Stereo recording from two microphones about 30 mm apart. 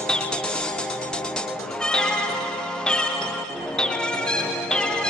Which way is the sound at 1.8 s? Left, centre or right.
Left.